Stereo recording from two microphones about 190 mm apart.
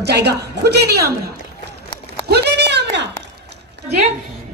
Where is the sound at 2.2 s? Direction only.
60° right (ahead or behind).